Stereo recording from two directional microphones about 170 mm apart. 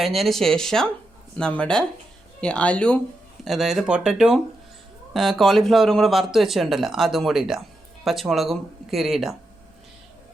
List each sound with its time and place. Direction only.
0.0 s speech: centre (ahead or behind)